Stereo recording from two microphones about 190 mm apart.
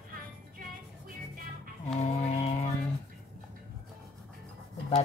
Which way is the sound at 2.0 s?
35° left (ahead or behind).